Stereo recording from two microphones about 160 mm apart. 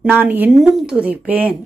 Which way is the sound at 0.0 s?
10° right (ahead or behind).